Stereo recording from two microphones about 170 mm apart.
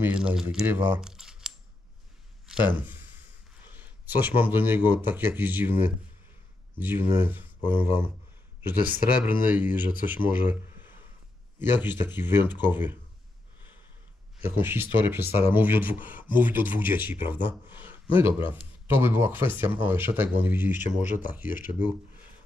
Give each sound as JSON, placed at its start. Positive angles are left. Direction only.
{"t": 0.0, "sound": "speech", "side_deg": -5}
{"t": 6.8, "sound": "speech", "side_deg": -10}
{"t": 14.5, "sound": "speech", "side_deg": -10}
{"t": 20.7, "sound": "speech", "side_deg": 45}